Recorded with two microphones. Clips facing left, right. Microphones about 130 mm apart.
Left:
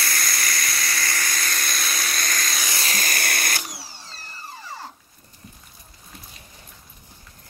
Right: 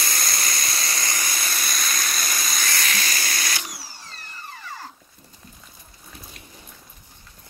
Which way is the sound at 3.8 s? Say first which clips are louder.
Even; 30° left (ahead or behind).